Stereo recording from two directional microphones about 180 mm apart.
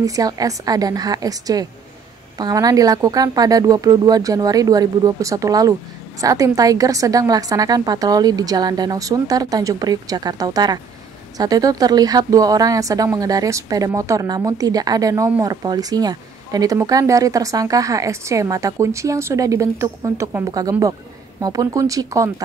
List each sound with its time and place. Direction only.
0.0 s speech: 20° right (ahead or behind)